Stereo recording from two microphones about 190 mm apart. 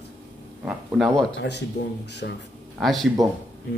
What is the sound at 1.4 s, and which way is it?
Speech, 65° left (ahead or behind).